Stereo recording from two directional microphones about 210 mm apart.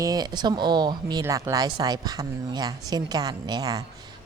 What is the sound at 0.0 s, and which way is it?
Speech, 20° right (ahead or behind).